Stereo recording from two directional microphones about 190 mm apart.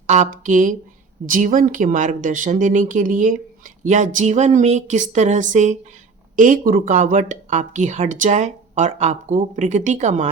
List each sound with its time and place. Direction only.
0.1 s speech: 40° right (ahead or behind)